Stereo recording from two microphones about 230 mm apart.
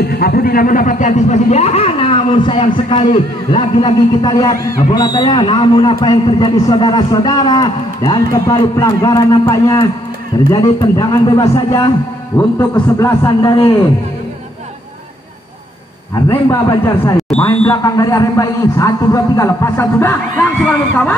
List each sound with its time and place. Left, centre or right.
0.1 s a man's voice: left; by 13.7 s centre
16.3 s a man's voice: centre